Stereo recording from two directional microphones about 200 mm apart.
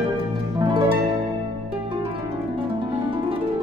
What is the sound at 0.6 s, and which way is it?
Harp, 25° right (ahead or behind).